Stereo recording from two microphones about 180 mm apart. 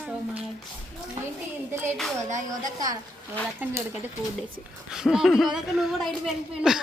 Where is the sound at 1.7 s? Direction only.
15° right (ahead or behind).